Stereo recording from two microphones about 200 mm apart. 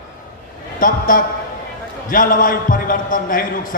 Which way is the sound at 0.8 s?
45° left (ahead or behind).